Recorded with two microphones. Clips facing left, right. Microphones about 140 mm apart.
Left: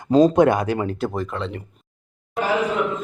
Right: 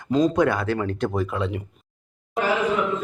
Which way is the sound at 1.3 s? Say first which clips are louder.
Right 2 dB; 10° right (ahead or behind).